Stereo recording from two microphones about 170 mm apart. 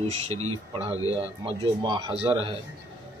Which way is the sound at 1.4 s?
25° right (ahead or behind).